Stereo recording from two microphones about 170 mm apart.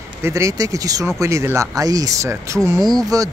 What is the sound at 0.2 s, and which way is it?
Speech, 15° right (ahead or behind).